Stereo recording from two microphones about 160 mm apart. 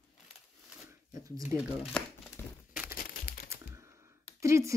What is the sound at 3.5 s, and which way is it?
Computer keyboard, 15° right (ahead or behind).